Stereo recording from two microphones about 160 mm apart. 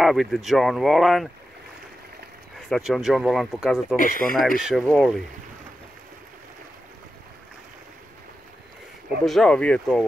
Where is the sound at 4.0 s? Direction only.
60° left (ahead or behind).